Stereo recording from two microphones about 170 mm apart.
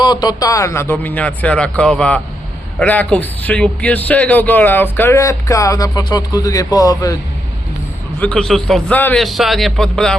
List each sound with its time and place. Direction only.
0.0 s a man's voice: 25° left (ahead or behind)
8.2 s a man's voice: 5° left (ahead or behind)